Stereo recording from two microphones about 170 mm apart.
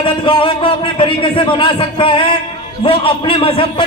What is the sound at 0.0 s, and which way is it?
A man's voice, 30° left (ahead or behind).